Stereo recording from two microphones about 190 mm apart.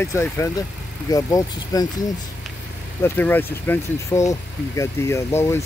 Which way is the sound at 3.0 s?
10° left (ahead or behind).